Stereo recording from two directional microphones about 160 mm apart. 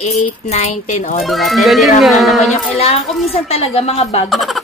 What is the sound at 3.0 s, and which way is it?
Speech, centre (ahead or behind).